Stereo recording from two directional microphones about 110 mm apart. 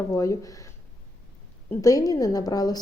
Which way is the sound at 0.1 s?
30° left (ahead or behind).